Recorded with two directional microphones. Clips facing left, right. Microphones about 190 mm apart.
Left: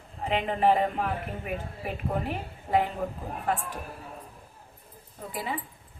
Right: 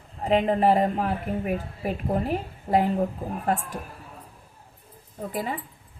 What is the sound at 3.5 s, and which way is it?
Speech, 40° right (ahead or behind).